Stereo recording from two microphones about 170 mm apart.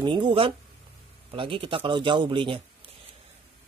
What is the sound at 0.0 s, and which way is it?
Speech, 25° right (ahead or behind).